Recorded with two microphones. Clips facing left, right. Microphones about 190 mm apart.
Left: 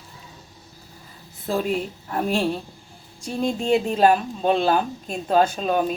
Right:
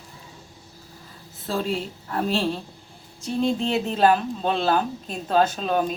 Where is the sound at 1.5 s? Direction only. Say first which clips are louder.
Left 3 dB; 15° left (ahead or behind).